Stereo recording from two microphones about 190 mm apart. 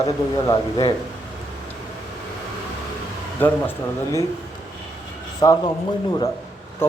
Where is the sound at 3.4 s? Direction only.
10° left (ahead or behind).